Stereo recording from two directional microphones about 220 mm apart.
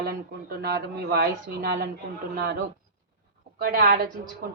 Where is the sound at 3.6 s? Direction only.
40° right (ahead or behind).